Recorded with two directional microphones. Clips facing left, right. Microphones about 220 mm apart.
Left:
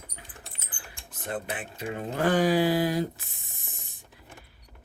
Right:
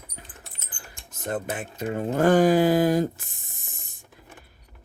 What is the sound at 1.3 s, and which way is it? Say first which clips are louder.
Speech: right 4 dB; 45° right (ahead or behind).